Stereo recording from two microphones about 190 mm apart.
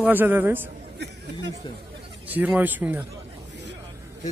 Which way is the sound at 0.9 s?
65° right (ahead or behind).